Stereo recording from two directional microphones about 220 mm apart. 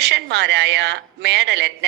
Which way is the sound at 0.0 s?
50° right (ahead or behind).